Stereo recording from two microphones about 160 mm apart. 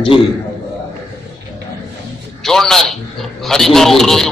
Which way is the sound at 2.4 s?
Centre (ahead or behind).